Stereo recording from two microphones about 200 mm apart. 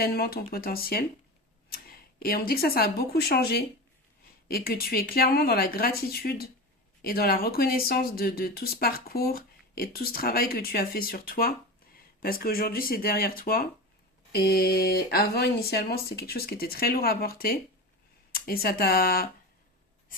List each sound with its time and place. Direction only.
0.0 s speech: 50° left (ahead or behind)